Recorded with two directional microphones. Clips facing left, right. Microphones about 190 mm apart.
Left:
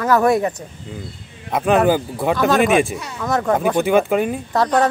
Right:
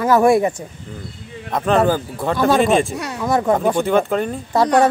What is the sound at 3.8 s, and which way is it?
Speech, 10° left (ahead or behind).